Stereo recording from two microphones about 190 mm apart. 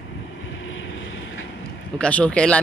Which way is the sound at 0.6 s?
80° left.